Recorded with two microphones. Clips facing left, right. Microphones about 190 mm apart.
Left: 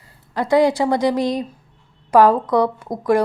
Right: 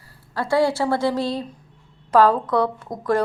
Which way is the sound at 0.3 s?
20° left (ahead or behind).